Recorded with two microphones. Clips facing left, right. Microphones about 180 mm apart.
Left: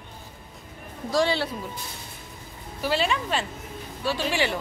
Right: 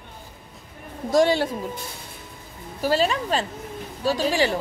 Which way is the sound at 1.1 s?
45° right (ahead or behind).